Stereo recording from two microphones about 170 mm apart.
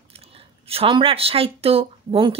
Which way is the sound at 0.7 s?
35° right (ahead or behind).